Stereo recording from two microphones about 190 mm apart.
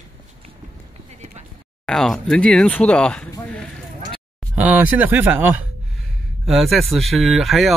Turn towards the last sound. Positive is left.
turn(degrees=0)  # may be behind; listen again after turning